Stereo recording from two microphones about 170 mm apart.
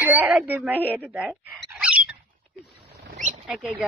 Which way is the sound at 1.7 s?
10° right (ahead or behind).